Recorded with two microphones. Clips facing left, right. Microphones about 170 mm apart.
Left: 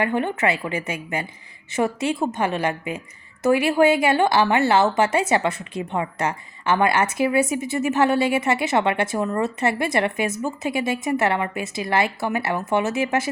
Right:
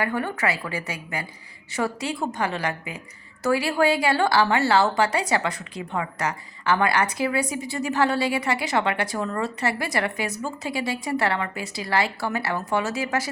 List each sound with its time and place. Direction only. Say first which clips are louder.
0.0 s a woman's voice: left 4 dB; 20° left (ahead or behind)